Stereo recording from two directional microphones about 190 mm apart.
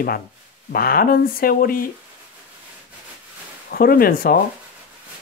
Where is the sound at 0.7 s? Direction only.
50° left (ahead or behind).